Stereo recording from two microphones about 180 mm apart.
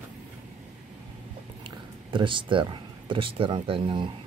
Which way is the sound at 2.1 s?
25° right (ahead or behind).